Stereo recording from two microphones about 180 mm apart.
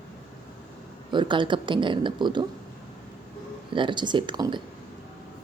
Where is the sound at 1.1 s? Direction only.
25° right (ahead or behind).